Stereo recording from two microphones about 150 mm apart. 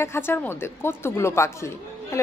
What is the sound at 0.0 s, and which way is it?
Speech, 15° left (ahead or behind).